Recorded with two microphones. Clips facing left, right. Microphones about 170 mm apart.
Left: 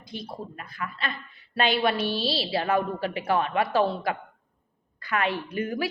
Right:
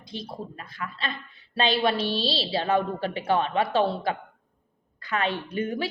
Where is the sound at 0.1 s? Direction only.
25° right (ahead or behind).